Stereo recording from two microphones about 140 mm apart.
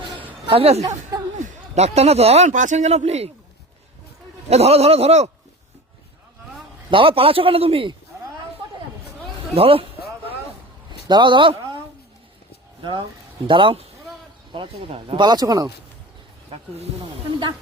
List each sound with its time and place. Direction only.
0.0 s chatter: 35° right (ahead or behind)
0.5 s speech: 45° right (ahead or behind)
0.8 s speech: 25° right (ahead or behind)
1.7 s speech: 50° right (ahead or behind)
2.5 s speech: 65° right (ahead or behind)
4.4 s speech: 50° right (ahead or behind)
6.9 s speech: 40° right (ahead or behind)
9.6 s speech: 40° right (ahead or behind)
11.1 s speech: 35° right (ahead or behind)
12.8 s speech: 35° right (ahead or behind)